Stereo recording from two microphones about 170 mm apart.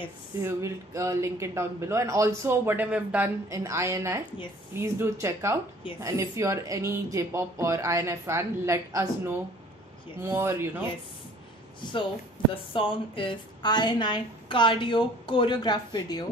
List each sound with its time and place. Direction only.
0.4 s a man's voice: 15° right (ahead or behind)
11.8 s a woman's voice: 25° left (ahead or behind)